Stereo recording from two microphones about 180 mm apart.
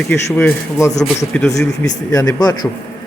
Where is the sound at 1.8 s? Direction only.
20° left (ahead or behind).